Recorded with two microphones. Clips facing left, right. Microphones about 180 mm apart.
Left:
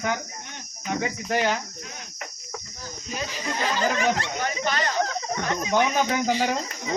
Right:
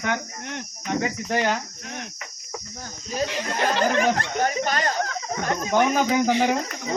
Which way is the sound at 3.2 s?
70° right (ahead or behind).